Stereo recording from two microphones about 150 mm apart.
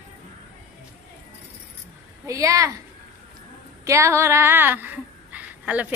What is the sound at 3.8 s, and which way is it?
A woman's voice, 20° right (ahead or behind).